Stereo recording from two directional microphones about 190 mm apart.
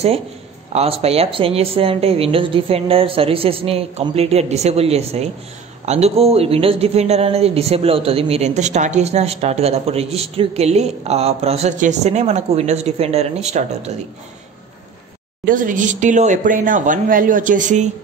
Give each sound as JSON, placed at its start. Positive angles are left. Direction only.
{"t": 0.7, "sound": "speech", "side_deg": -30}
{"t": 15.4, "sound": "speech", "side_deg": -45}